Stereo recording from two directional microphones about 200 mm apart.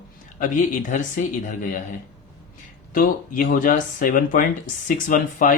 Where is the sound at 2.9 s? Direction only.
45° left (ahead or behind).